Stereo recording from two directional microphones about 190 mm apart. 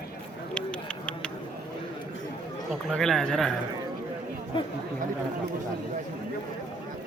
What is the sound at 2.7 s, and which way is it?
Speech, centre (ahead or behind).